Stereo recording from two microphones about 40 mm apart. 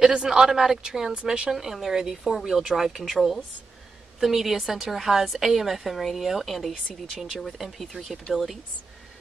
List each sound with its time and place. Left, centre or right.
0.0 s speech: centre
1.2 s a woman's voice: right
1.5 s speech: centre
3.0 s a woman's voice: centre
4.6 s speech: centre
4.9 s a woman's voice: centre